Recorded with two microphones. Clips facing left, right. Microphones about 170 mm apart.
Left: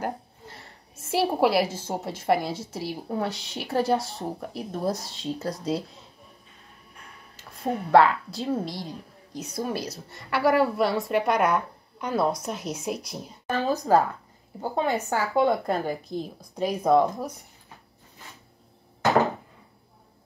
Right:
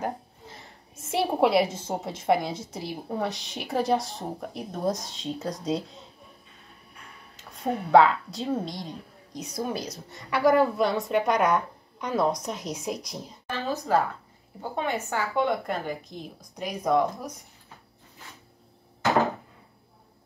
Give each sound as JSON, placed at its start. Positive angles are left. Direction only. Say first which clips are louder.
{"t": 0.0, "sound": "a sound", "louder": "even", "side_deg": 5}
{"t": 1.0, "sound": "a woman's voice", "louder": "left 1 dB", "side_deg": 0}
{"t": 7.6, "sound": "a woman's voice", "louder": "even", "side_deg": 0}
{"t": 13.5, "sound": "speech", "louder": "left 4 dB", "side_deg": 40}